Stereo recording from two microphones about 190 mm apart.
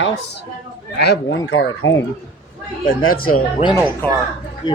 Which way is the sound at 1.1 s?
70° left (ahead or behind).